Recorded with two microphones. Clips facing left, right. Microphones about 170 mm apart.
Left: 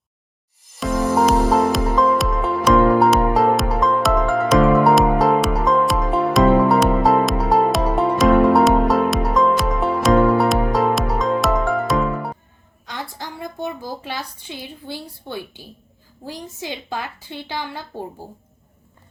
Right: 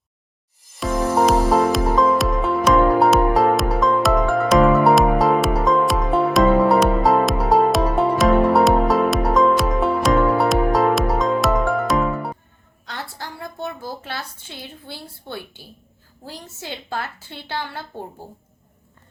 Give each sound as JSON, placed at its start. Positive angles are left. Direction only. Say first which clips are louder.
{"t": 0.8, "sound": "music", "louder": "left 1 dB", "side_deg": 0}
{"t": 12.9, "sound": "a sound", "louder": "left 1 dB", "side_deg": 15}
{"t": 16.2, "sound": "a woman's voice", "louder": "left 4 dB", "side_deg": 15}